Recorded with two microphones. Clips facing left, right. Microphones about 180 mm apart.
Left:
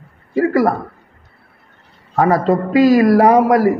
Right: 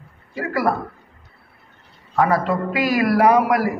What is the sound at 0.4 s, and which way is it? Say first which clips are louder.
Speech: left 7 dB; 40° left (ahead or behind).